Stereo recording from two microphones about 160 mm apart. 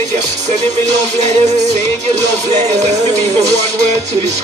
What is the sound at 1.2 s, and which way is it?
Music, 45° right (ahead or behind).